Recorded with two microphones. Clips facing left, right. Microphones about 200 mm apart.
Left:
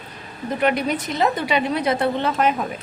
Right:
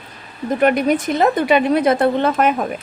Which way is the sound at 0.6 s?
50° right (ahead or behind).